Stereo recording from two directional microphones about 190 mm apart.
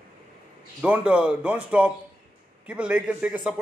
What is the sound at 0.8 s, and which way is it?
Speech, 5° right (ahead or behind).